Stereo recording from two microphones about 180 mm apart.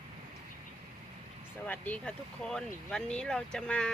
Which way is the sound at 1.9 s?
5° left (ahead or behind).